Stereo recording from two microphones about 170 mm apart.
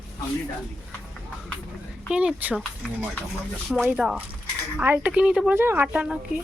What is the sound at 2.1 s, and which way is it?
Speech, 5° right (ahead or behind).